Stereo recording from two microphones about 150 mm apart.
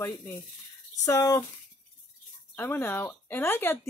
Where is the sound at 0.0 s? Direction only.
15° left (ahead or behind).